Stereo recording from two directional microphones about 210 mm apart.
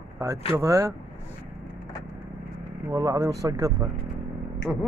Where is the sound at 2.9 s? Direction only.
15° right (ahead or behind).